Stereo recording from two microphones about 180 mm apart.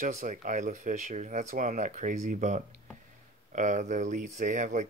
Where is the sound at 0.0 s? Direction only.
45° right (ahead or behind).